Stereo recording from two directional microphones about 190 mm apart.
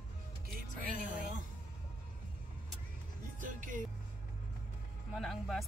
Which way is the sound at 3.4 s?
45° right (ahead or behind).